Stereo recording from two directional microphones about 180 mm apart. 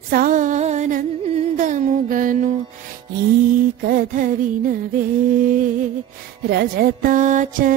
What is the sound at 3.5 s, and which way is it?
Music, 50° right (ahead or behind).